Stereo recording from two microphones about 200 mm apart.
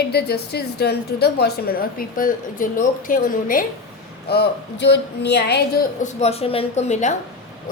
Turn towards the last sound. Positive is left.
turn(degrees=35)  # may be behind; listen again after turning